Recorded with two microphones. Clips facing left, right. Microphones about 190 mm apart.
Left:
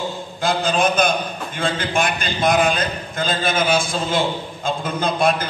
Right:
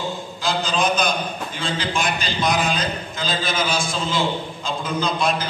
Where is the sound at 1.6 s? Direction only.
55° left (ahead or behind).